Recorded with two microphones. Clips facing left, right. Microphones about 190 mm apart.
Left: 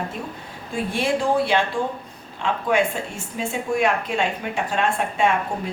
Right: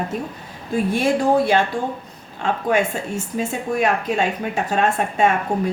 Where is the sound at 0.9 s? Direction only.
40° right (ahead or behind).